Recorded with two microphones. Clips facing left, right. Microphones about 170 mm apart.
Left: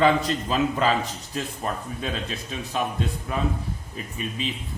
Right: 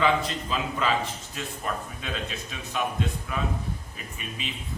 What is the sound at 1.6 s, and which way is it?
Speech, 35° left (ahead or behind).